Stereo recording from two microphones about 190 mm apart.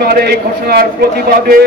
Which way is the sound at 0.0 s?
55° right (ahead or behind).